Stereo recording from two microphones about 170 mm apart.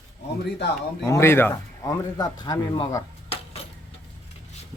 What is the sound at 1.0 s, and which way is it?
A man's voice, 15° left (ahead or behind).